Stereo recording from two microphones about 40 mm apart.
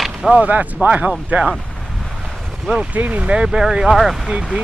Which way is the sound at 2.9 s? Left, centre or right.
Right.